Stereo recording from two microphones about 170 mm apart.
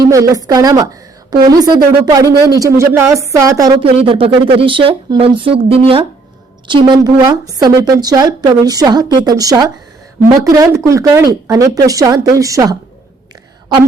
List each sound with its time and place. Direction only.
0.0 s a woman's voice: 20° right (ahead or behind)
3.8 s a woman's voice: 35° right (ahead or behind)